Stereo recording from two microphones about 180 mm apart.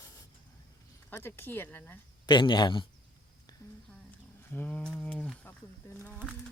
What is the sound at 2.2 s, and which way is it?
Speech, 25° left (ahead or behind).